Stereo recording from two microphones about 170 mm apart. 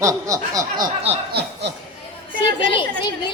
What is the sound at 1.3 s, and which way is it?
Speech, 75° right (ahead or behind).